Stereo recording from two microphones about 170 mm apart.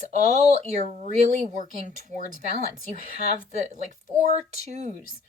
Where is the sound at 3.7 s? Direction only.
45° right (ahead or behind).